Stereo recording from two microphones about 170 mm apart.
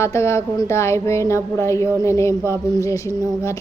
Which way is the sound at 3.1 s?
15° right (ahead or behind).